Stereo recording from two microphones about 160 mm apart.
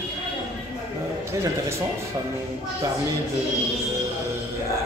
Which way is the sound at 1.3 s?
15° right (ahead or behind).